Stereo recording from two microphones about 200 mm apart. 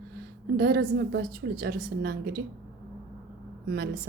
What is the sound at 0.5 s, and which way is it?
A woman's voice, 50° right (ahead or behind).